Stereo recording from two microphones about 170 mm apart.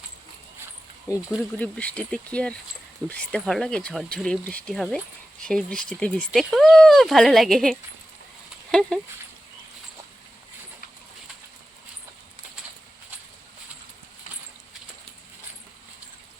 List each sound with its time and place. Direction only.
1.1 s speech: 15° left (ahead or behind)